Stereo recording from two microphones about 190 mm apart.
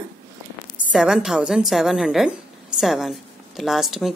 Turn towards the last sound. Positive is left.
turn(degrees=0)  # may be behind; listen again after turning